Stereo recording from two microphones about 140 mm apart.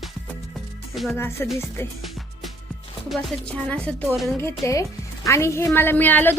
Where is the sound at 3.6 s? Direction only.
10° left (ahead or behind).